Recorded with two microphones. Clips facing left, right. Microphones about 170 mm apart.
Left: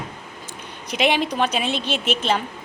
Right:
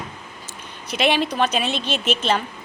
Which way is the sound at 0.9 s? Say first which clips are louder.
Even; 15° left (ahead or behind).